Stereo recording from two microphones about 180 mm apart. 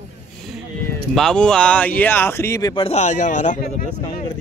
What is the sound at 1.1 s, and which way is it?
Speech, 5° left (ahead or behind).